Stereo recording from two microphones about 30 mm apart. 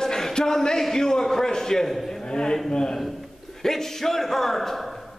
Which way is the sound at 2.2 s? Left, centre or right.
Left.